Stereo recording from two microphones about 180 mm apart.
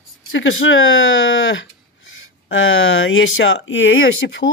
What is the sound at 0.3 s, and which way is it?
Speech, 90° left.